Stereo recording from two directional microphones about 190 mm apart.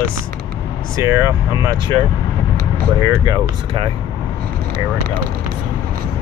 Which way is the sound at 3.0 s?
15° right (ahead or behind).